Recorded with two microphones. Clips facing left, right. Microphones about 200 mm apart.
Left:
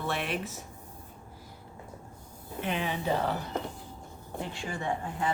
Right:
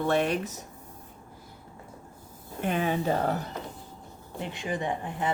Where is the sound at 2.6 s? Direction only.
45° right (ahead or behind).